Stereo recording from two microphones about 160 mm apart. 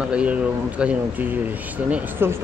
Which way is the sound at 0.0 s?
5° right (ahead or behind).